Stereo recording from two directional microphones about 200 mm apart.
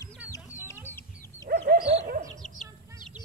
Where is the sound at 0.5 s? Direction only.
15° left (ahead or behind).